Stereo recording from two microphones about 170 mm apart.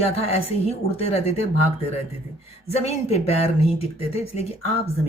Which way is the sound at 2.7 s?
40° left (ahead or behind).